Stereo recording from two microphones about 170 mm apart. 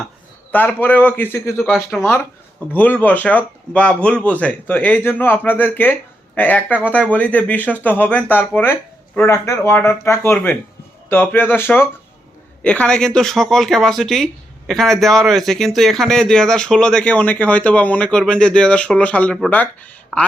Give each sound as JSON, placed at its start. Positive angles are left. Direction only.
{"t": 0.5, "sound": "speech", "side_deg": 10}
{"t": 1.5, "sound": "a man's voice", "side_deg": 0}
{"t": 2.0, "sound": "a man's voice", "side_deg": 15}